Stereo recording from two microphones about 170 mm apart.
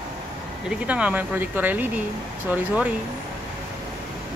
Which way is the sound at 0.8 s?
10° right (ahead or behind).